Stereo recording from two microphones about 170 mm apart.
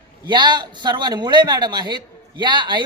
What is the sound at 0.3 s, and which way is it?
A woman's voice, 25° right (ahead or behind).